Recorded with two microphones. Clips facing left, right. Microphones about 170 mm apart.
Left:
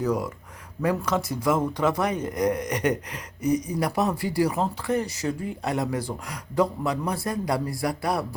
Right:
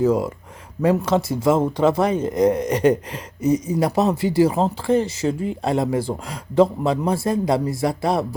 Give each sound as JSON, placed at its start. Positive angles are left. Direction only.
{"t": 0.0, "sound": "speech", "side_deg": -25}